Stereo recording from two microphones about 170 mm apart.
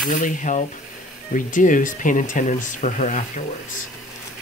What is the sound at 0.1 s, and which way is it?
Speech, 50° left (ahead or behind).